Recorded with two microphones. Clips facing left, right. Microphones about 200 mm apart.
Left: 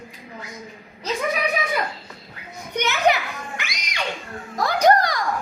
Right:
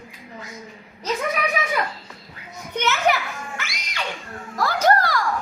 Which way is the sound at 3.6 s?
15° left (ahead or behind).